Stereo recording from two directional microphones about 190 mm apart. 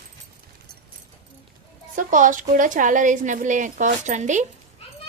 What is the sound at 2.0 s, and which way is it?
Speech, 45° right (ahead or behind).